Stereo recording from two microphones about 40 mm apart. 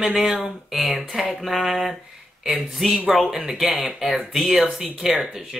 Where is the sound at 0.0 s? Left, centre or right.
Right.